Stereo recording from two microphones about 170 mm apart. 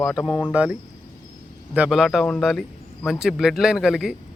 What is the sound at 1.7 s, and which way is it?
Speech, 5° right (ahead or behind).